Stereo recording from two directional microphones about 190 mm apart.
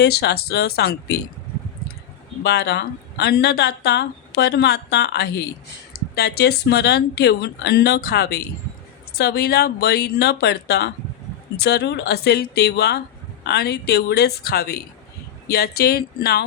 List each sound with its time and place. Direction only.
0.0 s speech: 60° left (ahead or behind)
2.4 s speech: 60° left (ahead or behind)